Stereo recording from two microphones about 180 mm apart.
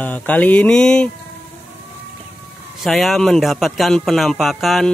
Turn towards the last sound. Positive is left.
turn(degrees=0)  # may be behind; listen again after turning